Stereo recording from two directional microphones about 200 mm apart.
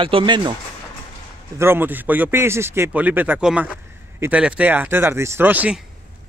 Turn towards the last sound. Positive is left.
turn(degrees=-5)  # may be behind; listen again after turning